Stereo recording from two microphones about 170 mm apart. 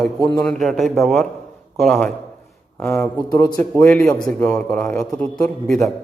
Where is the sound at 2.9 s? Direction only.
15° left (ahead or behind).